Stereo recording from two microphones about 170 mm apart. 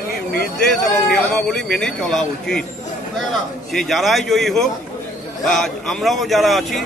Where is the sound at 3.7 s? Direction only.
Centre (ahead or behind).